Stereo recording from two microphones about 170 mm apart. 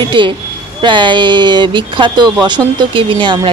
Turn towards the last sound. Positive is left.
turn(degrees=-30)  # may be behind; listen again after turning